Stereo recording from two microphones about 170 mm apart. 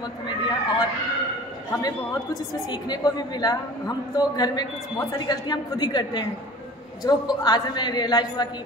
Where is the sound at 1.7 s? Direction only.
20° left (ahead or behind).